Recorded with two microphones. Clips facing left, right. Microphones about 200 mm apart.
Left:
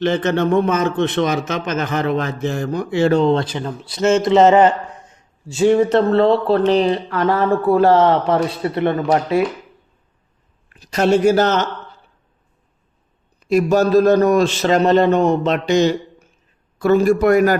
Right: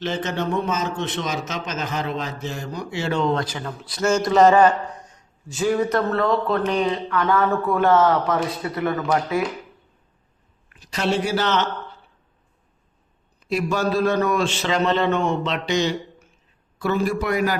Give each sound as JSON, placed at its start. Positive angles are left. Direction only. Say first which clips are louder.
{"t": 0.0, "sound": "a man's voice", "louder": "left 8 dB", "side_deg": 55}
{"t": 3.2, "sound": "speech", "louder": "left 6 dB", "side_deg": 25}
{"t": 10.7, "sound": "speech", "louder": "left 8 dB", "side_deg": 45}
{"t": 13.5, "sound": "a man's voice", "louder": "left 8 dB", "side_deg": 40}